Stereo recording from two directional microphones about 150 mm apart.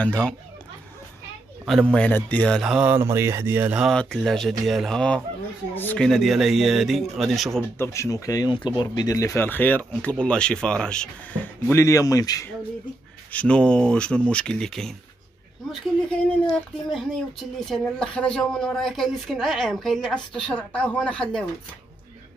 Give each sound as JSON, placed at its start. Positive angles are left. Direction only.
{"t": 0.0, "sound": "speech", "side_deg": 5}
{"t": 1.7, "sound": "speech", "side_deg": 5}
{"t": 2.9, "sound": "speech", "side_deg": -15}
{"t": 3.9, "sound": "speech", "side_deg": 5}
{"t": 7.7, "sound": "speech", "side_deg": 20}
{"t": 11.6, "sound": "speech", "side_deg": 20}
{"t": 13.3, "sound": "speech", "side_deg": 10}